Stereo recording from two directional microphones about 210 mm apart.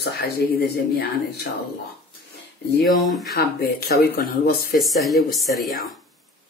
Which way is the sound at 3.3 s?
45° left (ahead or behind).